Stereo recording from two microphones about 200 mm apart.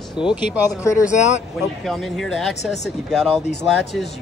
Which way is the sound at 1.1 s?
35° left (ahead or behind).